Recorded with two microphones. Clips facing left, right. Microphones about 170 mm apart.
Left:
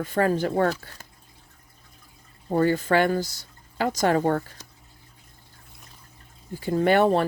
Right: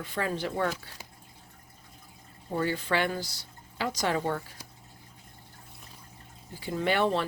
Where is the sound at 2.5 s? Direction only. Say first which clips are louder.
Left 8 dB; 45° left (ahead or behind).